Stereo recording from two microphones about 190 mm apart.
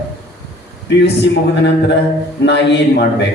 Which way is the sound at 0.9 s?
65° left (ahead or behind).